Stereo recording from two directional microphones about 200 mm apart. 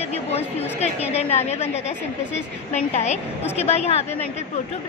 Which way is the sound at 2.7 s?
35° left (ahead or behind).